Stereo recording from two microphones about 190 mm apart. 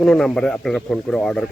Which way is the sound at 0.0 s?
5° left (ahead or behind).